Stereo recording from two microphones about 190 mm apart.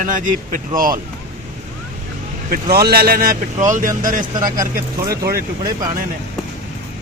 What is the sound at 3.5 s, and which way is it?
Speech, 40° right (ahead or behind).